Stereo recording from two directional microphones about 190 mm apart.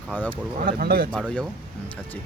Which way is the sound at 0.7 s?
50° right (ahead or behind).